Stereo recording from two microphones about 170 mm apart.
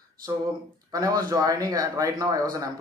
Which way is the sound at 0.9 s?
20° right (ahead or behind).